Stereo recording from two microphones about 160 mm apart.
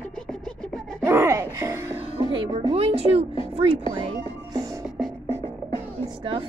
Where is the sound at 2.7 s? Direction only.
35° right (ahead or behind).